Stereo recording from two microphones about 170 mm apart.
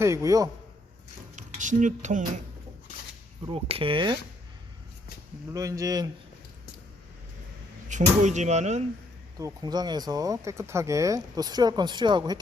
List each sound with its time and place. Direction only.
0.0 s speech: 20° right (ahead or behind)
1.4 s speech: 45° right (ahead or behind)
3.4 s speech: 35° right (ahead or behind)
5.5 s speech: 20° right (ahead or behind)
7.9 s speech: 45° right (ahead or behind)
9.4 s speech: 20° right (ahead or behind)